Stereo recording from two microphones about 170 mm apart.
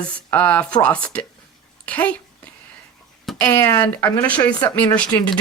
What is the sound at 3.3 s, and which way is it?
Speech, 5° left (ahead or behind).